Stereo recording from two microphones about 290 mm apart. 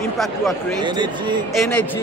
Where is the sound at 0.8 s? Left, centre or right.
Centre.